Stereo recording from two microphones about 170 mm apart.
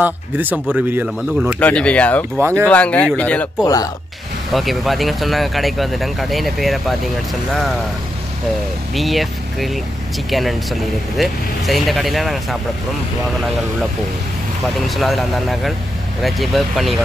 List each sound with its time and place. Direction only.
0.0 s speech: 10° right (ahead or behind); by 2.2 s 10° left (ahead or behind)
2.3 s speech: 15° right (ahead or behind)
2.7 s speech: 10° left (ahead or behind)
3.6 s speech: 20° left (ahead or behind)
4.5 s speech: centre (ahead or behind)
8.9 s speech: centre (ahead or behind)
15.0 s speech: centre (ahead or behind)